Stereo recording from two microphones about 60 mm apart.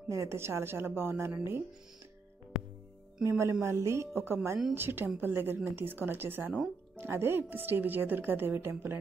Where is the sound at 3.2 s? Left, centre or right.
Right.